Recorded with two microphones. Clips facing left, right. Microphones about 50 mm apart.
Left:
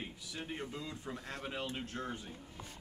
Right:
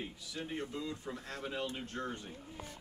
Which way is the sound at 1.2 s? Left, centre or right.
Centre.